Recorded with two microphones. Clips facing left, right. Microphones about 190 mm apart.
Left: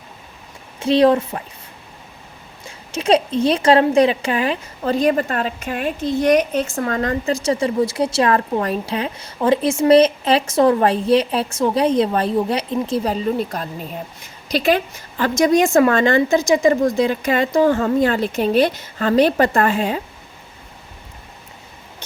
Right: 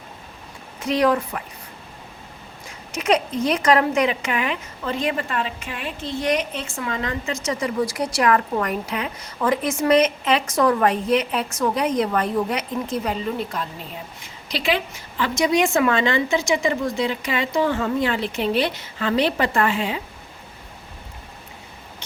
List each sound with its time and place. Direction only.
0.8 s a woman's voice: 30° left (ahead or behind)
2.6 s a woman's voice: 30° left (ahead or behind); by 20.0 s 45° left (ahead or behind)